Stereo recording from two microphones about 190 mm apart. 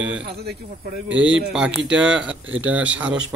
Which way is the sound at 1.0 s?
75° right (ahead or behind).